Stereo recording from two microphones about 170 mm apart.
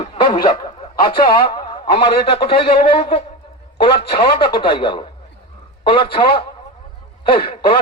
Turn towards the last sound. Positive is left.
turn(degrees=30)  # may be behind; listen again after turning